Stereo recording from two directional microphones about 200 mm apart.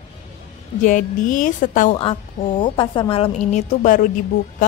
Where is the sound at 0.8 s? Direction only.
40° left (ahead or behind).